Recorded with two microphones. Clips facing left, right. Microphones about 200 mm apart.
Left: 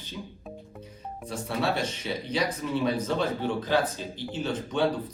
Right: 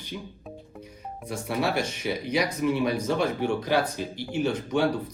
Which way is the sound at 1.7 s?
10° right (ahead or behind).